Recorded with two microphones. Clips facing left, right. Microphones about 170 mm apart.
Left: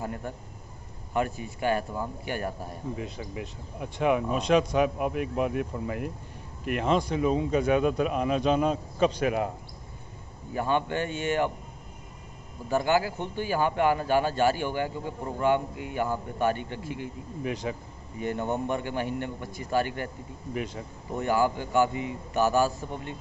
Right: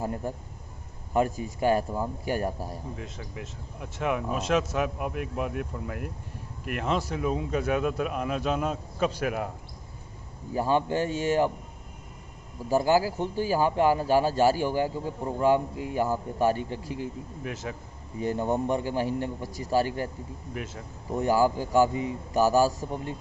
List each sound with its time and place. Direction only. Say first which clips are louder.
1.1 s speech: right 3 dB; 35° right (ahead or behind)
3.0 s speech: left 4 dB; 5° left (ahead or behind)
10.5 s speech: right 2 dB; 35° right (ahead or behind)
12.6 s speech: right 2 dB; 35° right (ahead or behind)
17.4 s speech: left 5 dB; centre (ahead or behind)
18.2 s speech: right 2 dB; 35° right (ahead or behind)
20.5 s speech: left 4 dB; 5° right (ahead or behind)
21.2 s speech: right 2 dB; 35° right (ahead or behind)